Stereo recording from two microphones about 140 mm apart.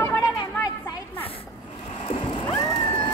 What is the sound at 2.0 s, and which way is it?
Vehicle, 40° left (ahead or behind).